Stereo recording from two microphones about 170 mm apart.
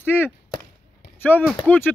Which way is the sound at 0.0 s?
10° left (ahead or behind).